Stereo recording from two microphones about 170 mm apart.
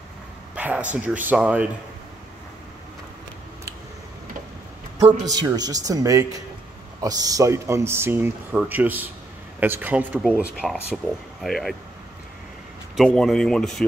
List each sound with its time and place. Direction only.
0.6 s a sound: 10° right (ahead or behind)
0.9 s speech: 10° right (ahead or behind)
4.9 s a man's voice: 20° right (ahead or behind); by 11.7 s centre (ahead or behind)
12.9 s speech: centre (ahead or behind)